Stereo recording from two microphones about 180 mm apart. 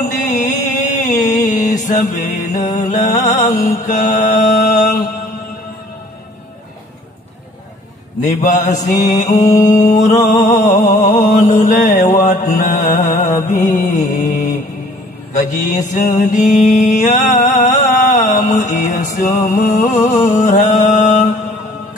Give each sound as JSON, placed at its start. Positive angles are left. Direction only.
{"t": 0.0, "sound": "music", "side_deg": 40}
{"t": 1.4, "sound": "mantra", "side_deg": 40}
{"t": 2.9, "sound": "music", "side_deg": 40}
{"t": 3.8, "sound": "mantra", "side_deg": 40}
{"t": 8.4, "sound": "mantra", "side_deg": 40}